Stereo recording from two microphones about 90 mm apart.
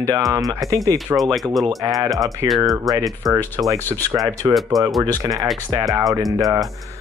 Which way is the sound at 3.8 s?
20° left (ahead or behind).